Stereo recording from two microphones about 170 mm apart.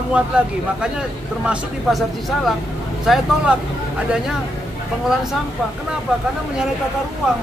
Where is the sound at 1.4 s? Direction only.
5° right (ahead or behind).